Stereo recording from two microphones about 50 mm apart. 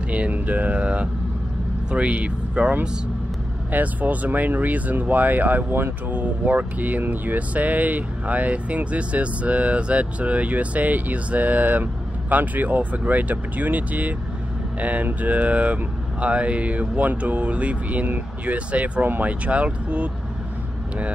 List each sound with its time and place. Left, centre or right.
0.1 s speech: right
3.7 s speech: right
6.1 s speech: right